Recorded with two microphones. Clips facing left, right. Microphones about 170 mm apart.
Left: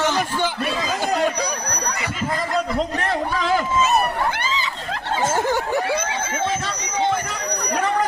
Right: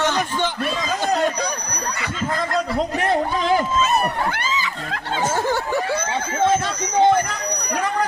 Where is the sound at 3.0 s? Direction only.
20° right (ahead or behind).